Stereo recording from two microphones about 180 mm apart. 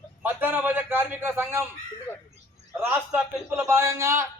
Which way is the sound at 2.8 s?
10° right (ahead or behind).